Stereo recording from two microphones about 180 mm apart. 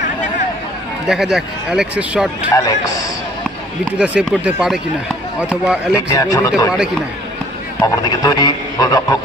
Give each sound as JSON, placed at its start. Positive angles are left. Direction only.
{"t": 1.0, "sound": "speech", "side_deg": -5}
{"t": 2.5, "sound": "a man's voice", "side_deg": 20}
{"t": 3.8, "sound": "speech", "side_deg": -5}
{"t": 6.0, "sound": "a man's voice", "side_deg": 20}
{"t": 7.8, "sound": "a man's voice", "side_deg": 20}